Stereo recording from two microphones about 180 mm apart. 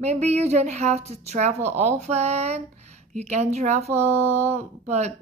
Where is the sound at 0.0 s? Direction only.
35° right (ahead or behind).